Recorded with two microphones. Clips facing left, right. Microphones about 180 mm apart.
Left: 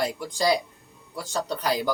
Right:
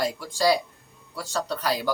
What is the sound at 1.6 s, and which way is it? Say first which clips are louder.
Speech: left 2 dB; 15° left (ahead or behind).